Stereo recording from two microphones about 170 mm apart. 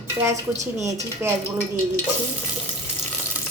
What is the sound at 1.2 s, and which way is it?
Speech, 15° right (ahead or behind).